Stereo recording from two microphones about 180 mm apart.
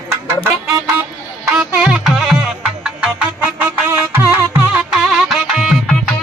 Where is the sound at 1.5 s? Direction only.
5° right (ahead or behind).